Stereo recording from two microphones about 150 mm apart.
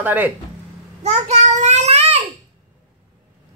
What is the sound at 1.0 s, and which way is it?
Child singing, 50° right (ahead or behind).